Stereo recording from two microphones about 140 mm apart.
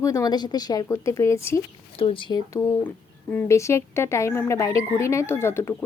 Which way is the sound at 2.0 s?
40° left (ahead or behind).